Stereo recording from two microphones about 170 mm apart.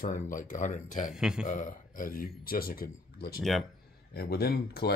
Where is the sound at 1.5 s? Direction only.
50° left (ahead or behind); by 4.9 s 65° left (ahead or behind).